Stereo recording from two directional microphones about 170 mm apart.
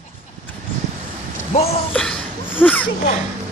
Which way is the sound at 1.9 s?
5° left (ahead or behind).